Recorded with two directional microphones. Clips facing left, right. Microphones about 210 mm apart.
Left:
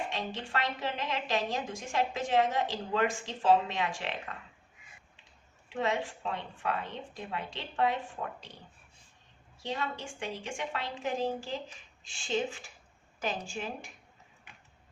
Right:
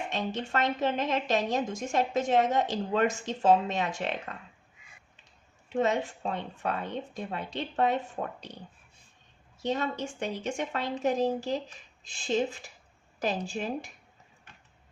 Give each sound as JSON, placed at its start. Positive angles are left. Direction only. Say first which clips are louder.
{"t": 0.1, "sound": "a woman's voice", "louder": "right 4 dB", "side_deg": -45}
{"t": 5.7, "sound": "a woman's voice", "louder": "right 5 dB", "side_deg": -40}
{"t": 9.6, "sound": "a woman's voice", "louder": "right 6 dB", "side_deg": -40}